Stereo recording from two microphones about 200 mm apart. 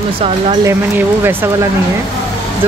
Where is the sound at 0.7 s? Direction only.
10° right (ahead or behind).